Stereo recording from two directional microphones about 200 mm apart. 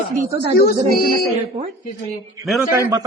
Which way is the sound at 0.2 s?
30° right (ahead or behind).